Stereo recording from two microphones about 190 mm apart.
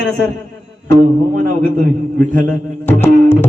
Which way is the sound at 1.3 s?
55° right (ahead or behind).